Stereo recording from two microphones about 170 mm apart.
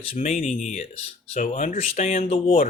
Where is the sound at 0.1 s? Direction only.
40° left (ahead or behind).